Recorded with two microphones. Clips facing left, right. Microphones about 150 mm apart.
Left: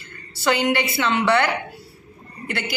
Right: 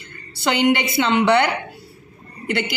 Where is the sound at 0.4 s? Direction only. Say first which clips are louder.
Right 2 dB; 20° right (ahead or behind).